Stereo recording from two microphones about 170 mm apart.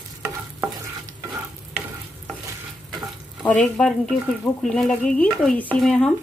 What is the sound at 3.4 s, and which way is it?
A woman's voice, 5° left (ahead or behind).